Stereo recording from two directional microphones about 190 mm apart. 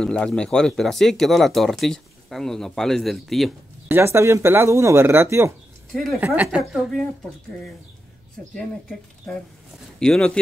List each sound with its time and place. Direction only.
0.0 s speech: 5° left (ahead or behind)
3.9 s speech: 15° right (ahead or behind)
5.9 s speech: centre (ahead or behind)
6.2 s speech: 10° right (ahead or behind)
9.3 s speech: 5° left (ahead or behind)